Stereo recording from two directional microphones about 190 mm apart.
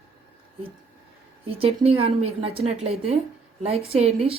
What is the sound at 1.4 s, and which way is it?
A woman's voice, 30° right (ahead or behind).